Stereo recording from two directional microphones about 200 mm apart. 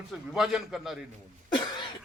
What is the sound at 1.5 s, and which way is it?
Cough, 25° left (ahead or behind).